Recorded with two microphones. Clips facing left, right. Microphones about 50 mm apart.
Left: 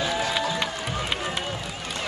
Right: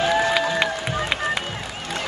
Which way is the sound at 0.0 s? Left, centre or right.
Right.